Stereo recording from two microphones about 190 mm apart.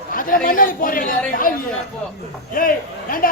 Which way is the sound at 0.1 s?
45° left (ahead or behind).